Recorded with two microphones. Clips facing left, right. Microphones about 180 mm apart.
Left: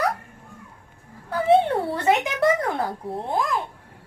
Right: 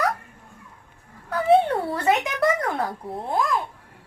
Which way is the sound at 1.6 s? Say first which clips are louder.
Left 1 dB; 30° left (ahead or behind).